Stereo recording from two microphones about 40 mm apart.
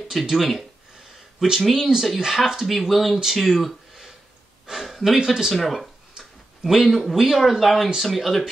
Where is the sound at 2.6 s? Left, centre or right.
Centre.